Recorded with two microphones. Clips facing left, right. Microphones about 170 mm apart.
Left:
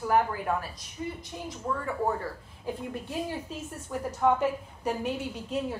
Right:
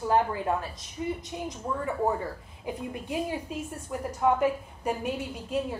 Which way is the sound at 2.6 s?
10° right (ahead or behind).